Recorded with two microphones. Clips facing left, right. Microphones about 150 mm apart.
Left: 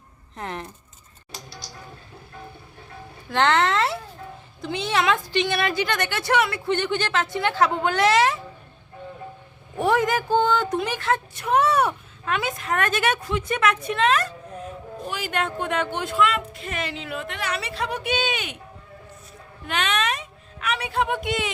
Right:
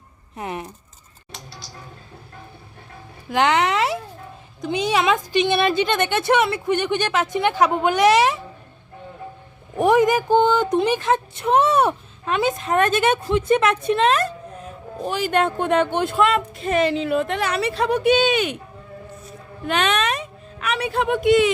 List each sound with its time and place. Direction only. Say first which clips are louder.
0.3 s speech: right 3 dB; 10° right (ahead or behind)
3.2 s a sound: right 2 dB; 15° right (ahead or behind)
4.6 s speech: right 3 dB; 15° right (ahead or behind)
9.7 s speech: right 5 dB; 20° right (ahead or behind)
19.6 s cat: right 4 dB; 40° right (ahead or behind)
20.7 s a sound: right 3 dB; 45° right (ahead or behind)